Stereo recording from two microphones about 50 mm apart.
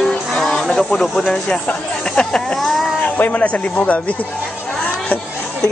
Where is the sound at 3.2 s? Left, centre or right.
Left.